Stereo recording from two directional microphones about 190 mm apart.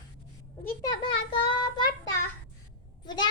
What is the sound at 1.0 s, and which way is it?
Child singing, 25° left (ahead or behind).